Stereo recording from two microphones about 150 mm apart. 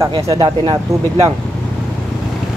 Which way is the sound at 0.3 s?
25° right (ahead or behind).